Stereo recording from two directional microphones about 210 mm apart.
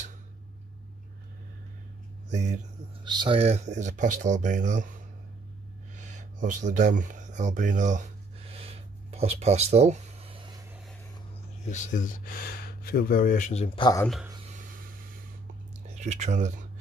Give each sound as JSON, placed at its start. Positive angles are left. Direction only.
{"t": 2.3, "sound": "speech", "side_deg": -35}
{"t": 3.0, "sound": "speech", "side_deg": -20}
{"t": 6.1, "sound": "speech", "side_deg": -35}
{"t": 8.5, "sound": "a sound", "side_deg": -30}
{"t": 11.7, "sound": "speech", "side_deg": 35}
{"t": 14.3, "sound": "a sound", "side_deg": -30}
{"t": 15.9, "sound": "speech", "side_deg": -35}